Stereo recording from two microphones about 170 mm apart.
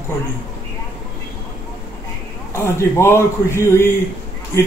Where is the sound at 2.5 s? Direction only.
15° left (ahead or behind).